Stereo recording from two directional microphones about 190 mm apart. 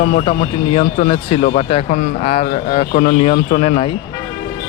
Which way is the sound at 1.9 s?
45° left (ahead or behind).